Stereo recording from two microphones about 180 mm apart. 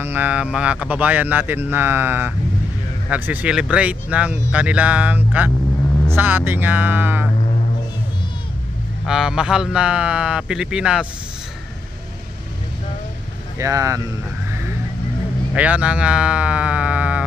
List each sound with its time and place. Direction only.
0.0 s speech: 10° right (ahead or behind)
9.0 s a man's voice: 5° right (ahead or behind)
13.6 s speech: 15° right (ahead or behind)
15.5 s speech: 5° right (ahead or behind)